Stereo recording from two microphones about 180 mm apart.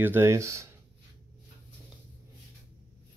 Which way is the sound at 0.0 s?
10° right (ahead or behind).